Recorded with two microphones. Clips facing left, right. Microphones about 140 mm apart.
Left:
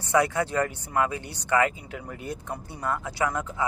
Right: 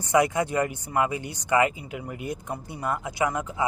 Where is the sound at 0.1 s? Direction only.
15° right (ahead or behind).